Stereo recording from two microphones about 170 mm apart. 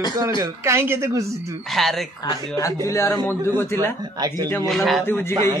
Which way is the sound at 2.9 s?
15° left (ahead or behind).